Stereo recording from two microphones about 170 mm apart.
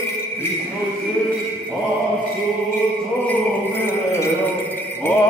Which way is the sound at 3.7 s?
15° left (ahead or behind).